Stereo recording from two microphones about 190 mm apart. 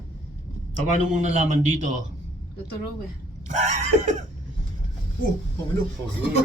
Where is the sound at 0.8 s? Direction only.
40° right (ahead or behind).